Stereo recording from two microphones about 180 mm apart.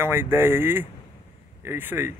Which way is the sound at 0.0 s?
15° right (ahead or behind).